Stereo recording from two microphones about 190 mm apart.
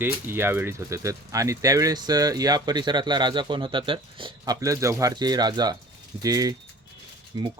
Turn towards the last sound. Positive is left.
turn(degrees=-20)  # may be behind; listen again after turning